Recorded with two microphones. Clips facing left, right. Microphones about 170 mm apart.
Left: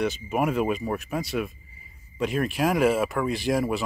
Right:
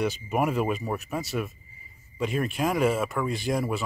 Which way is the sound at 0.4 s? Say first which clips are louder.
Left 1 dB; 5° left (ahead or behind).